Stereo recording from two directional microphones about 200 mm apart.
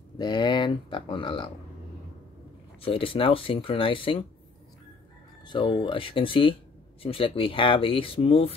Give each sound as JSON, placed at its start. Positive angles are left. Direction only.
{"t": 0.2, "sound": "speech", "side_deg": 20}
{"t": 2.8, "sound": "speech", "side_deg": 25}
{"t": 5.5, "sound": "speech", "side_deg": 25}